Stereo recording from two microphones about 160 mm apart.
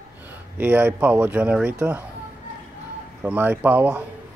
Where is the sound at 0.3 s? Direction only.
10° right (ahead or behind).